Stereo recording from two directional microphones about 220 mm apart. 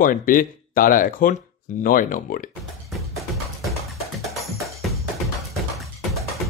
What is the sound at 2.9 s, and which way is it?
Music, centre (ahead or behind).